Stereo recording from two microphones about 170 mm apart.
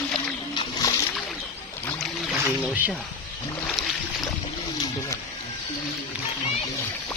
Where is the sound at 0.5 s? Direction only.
20° left (ahead or behind).